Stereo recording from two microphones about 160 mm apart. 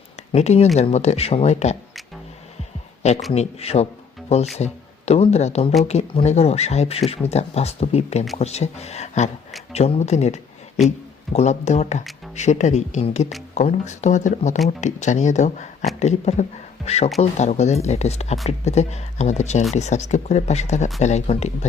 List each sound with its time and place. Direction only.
0.3 s speech: 40° left (ahead or behind)
3.3 s speech: 40° left (ahead or behind)